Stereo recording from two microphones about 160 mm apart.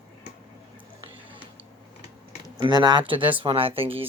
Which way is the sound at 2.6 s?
25° right (ahead or behind).